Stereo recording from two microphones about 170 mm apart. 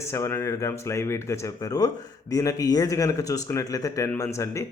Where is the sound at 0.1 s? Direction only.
15° left (ahead or behind).